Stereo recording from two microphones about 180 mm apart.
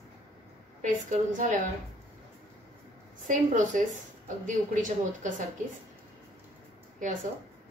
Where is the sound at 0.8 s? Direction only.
45° right (ahead or behind).